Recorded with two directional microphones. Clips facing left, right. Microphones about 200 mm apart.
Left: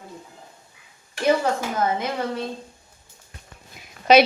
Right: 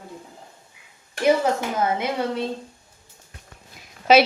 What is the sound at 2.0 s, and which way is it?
Speech, 20° right (ahead or behind).